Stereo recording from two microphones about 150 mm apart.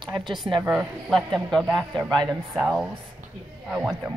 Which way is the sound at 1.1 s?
Centre (ahead or behind).